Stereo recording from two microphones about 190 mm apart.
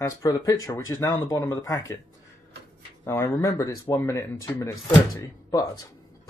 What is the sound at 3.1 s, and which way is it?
Speech, 15° left (ahead or behind).